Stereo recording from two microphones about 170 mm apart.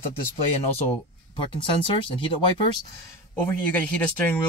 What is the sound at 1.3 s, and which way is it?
Speech, 30° left (ahead or behind).